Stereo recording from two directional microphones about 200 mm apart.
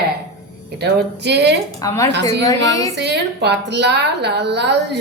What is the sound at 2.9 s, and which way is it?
A woman's voice, 55° right (ahead or behind).